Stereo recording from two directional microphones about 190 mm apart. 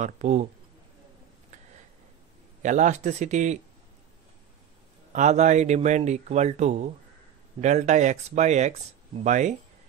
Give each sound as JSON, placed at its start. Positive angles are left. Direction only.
{"t": 0.0, "sound": "speech", "side_deg": -40}
{"t": 2.6, "sound": "speech", "side_deg": -40}
{"t": 5.1, "sound": "speech", "side_deg": -40}